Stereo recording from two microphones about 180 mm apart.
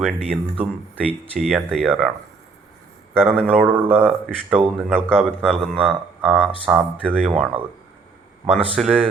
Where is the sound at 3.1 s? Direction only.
10° right (ahead or behind).